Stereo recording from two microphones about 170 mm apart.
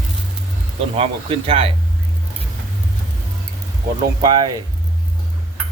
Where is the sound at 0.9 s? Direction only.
35° right (ahead or behind).